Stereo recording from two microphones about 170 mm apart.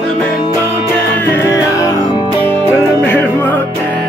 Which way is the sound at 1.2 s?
15° left (ahead or behind).